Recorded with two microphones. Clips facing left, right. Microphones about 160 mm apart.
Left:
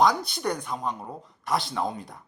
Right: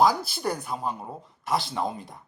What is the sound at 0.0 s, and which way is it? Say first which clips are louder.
Speech: even; 5° right (ahead or behind).